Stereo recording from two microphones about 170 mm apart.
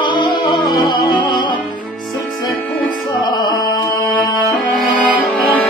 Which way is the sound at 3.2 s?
25° left (ahead or behind).